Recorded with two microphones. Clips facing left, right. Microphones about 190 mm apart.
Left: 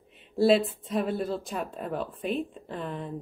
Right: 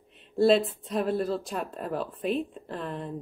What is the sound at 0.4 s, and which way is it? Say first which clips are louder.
Speech: even; centre (ahead or behind).